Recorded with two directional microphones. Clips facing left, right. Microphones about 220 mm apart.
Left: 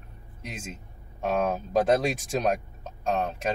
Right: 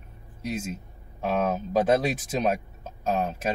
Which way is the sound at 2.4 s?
5° right (ahead or behind).